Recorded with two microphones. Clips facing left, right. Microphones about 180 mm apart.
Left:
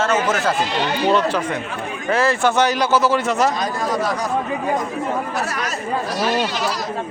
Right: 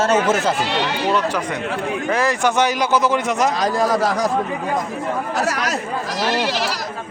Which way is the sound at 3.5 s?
90° right.